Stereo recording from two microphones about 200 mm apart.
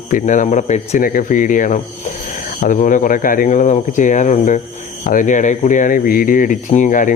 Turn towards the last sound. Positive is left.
turn(degrees=40)  # may be behind; listen again after turning